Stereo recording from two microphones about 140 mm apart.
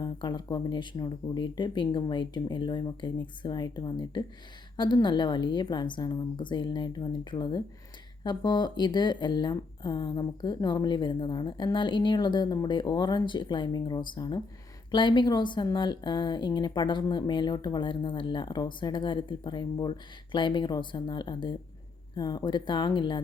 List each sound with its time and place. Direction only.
0.0 s speech: 30° left (ahead or behind)